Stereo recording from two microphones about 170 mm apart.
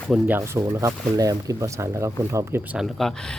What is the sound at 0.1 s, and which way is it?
Speech, 10° right (ahead or behind).